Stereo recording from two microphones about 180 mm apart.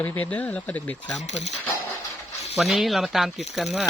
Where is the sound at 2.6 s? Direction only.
Centre (ahead or behind).